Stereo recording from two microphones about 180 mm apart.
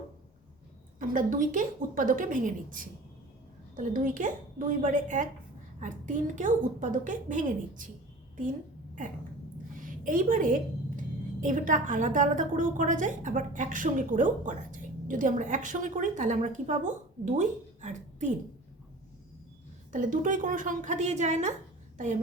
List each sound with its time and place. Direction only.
0.9 s a woman's voice: 50° right (ahead or behind)
9.7 s a woman's voice: 50° right (ahead or behind)
19.9 s a woman's voice: 45° right (ahead or behind)